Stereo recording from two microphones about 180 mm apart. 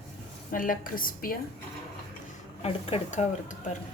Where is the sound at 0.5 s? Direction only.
50° left (ahead or behind).